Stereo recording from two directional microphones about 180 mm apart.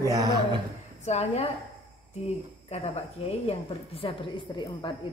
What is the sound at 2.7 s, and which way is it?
A woman's voice, 35° left (ahead or behind).